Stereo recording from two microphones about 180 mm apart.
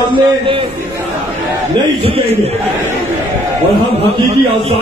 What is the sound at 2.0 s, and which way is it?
Speech, 35° right (ahead or behind).